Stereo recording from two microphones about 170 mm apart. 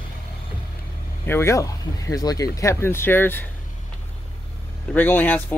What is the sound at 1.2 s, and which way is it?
Speech, 15° left (ahead or behind).